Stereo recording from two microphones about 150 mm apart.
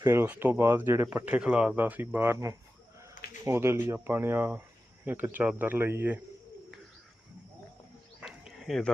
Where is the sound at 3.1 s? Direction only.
60° left (ahead or behind).